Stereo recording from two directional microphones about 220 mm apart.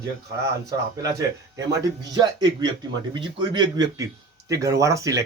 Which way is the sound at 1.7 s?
15° right (ahead or behind).